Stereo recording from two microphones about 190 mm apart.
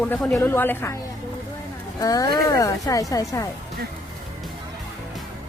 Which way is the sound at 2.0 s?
20° left (ahead or behind).